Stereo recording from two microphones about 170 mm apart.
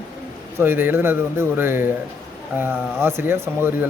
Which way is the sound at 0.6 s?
10° right (ahead or behind).